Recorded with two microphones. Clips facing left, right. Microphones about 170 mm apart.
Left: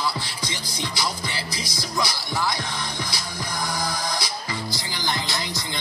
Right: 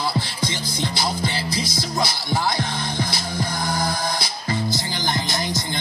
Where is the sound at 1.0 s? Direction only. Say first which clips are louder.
Right 4 dB; 25° right (ahead or behind).